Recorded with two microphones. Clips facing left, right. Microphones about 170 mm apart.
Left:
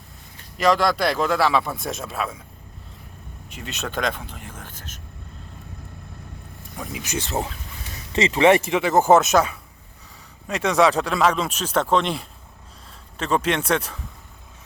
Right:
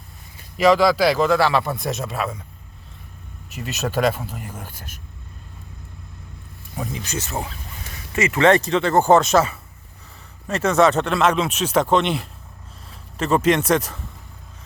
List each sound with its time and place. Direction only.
0.3 s speech: 5° right (ahead or behind)
3.5 s speech: 5° right (ahead or behind)
6.9 s speech: 15° left (ahead or behind)
7.2 s speech: 25° left (ahead or behind)
8.3 s speech: 15° left (ahead or behind); by 14.0 s 5° right (ahead or behind)